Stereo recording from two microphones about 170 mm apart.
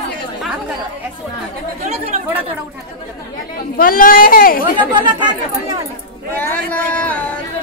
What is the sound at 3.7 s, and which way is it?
Speech, 55° left (ahead or behind).